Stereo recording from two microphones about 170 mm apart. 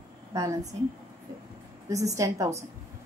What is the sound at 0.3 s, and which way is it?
Speech, 20° right (ahead or behind).